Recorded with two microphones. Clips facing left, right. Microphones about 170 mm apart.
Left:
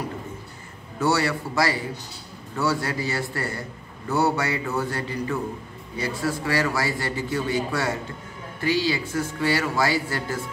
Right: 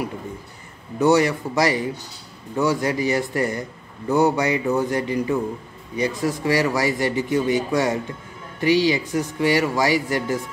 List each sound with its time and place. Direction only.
0.9 s a man's voice: 15° right (ahead or behind)